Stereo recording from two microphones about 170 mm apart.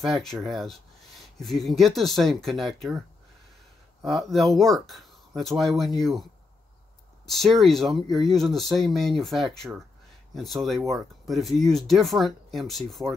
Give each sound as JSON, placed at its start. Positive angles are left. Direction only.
{"t": 0.0, "sound": "speech", "side_deg": 0}
{"t": 4.0, "sound": "speech", "side_deg": 0}
{"t": 7.2, "sound": "speech", "side_deg": 0}